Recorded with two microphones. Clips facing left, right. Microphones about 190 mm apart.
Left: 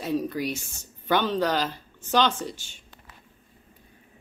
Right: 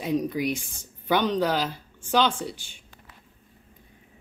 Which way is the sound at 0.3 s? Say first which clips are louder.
Right 2 dB; 15° right (ahead or behind).